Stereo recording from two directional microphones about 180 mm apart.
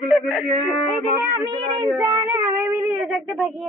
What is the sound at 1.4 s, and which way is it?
Speech, 25° right (ahead or behind).